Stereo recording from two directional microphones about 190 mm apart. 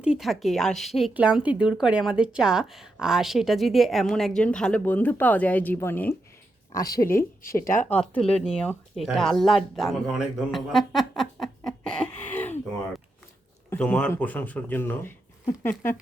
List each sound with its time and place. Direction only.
0.0 s speech: centre (ahead or behind); by 7.3 s 15° left (ahead or behind)
7.6 s speech: 45° left (ahead or behind)
7.9 s speech: 5° left (ahead or behind)
13.7 s speech: 5° left (ahead or behind)